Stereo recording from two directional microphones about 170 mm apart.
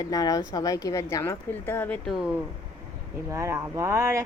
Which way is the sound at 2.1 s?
5° right (ahead or behind).